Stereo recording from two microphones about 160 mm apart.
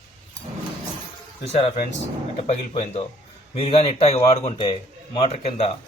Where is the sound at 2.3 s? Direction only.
40° left (ahead or behind).